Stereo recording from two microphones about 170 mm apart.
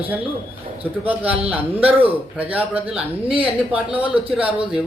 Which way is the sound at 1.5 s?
10° right (ahead or behind).